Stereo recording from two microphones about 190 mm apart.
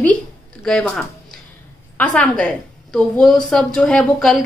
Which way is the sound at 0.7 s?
5° left (ahead or behind).